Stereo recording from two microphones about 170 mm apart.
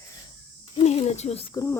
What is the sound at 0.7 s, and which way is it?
Speech, 40° left (ahead or behind).